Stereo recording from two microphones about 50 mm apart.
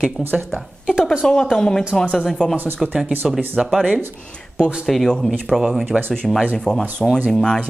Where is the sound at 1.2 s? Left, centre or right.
Centre.